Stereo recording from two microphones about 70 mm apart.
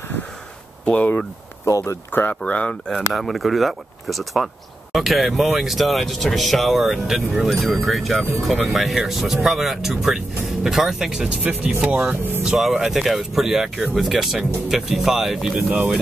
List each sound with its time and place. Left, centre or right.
0.8 s speech: centre
1.7 s speech: left
2.1 s speech: left
2.9 s speech: centre
12.2 s music: right
12.4 s speech: centre